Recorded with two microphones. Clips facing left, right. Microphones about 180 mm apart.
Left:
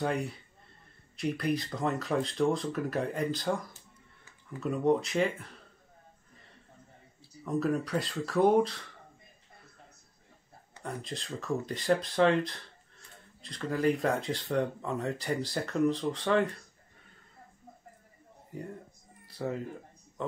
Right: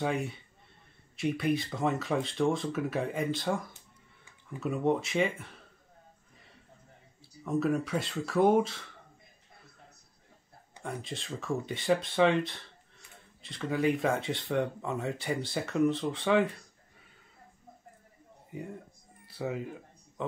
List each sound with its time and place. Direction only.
0.0 s speech: centre (ahead or behind)
7.4 s speech: centre (ahead or behind)
10.8 s speech: centre (ahead or behind)
18.5 s speech: 5° right (ahead or behind)
19.2 s a sound: 5° right (ahead or behind)